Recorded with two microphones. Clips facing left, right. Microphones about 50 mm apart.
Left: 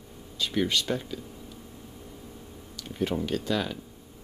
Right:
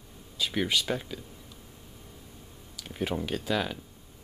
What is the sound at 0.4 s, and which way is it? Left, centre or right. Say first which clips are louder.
Speech: left 1 dB; centre.